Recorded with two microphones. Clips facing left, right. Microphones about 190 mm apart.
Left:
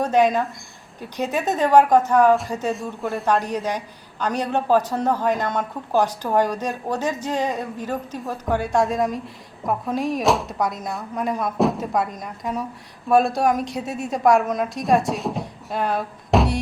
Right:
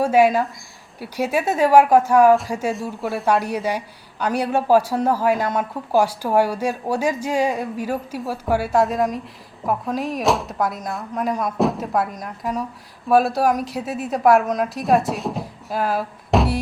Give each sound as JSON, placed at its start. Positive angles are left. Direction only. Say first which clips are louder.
{"t": 0.0, "sound": "a woman's voice", "louder": "right 2 dB", "side_deg": -10}